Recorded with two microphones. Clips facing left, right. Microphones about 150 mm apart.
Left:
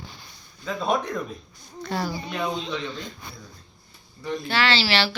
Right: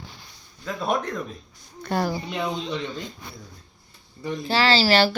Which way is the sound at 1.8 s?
50° right (ahead or behind).